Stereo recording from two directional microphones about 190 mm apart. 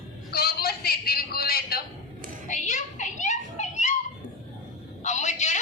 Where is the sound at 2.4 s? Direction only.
40° left (ahead or behind).